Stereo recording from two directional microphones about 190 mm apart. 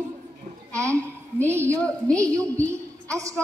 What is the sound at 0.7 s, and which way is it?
A woman's voice, 15° right (ahead or behind).